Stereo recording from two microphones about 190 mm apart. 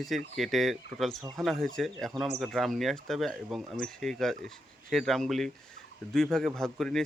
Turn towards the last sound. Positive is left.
turn(degrees=0)  # may be behind; listen again after turning